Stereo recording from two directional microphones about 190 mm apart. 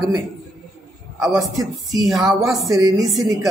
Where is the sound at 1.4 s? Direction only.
20° right (ahead or behind).